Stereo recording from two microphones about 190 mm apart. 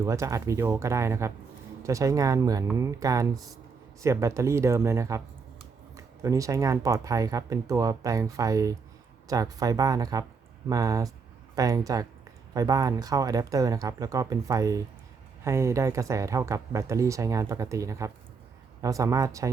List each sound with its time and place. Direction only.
0.0 s speech: 15° right (ahead or behind)
6.2 s speech: 15° right (ahead or behind)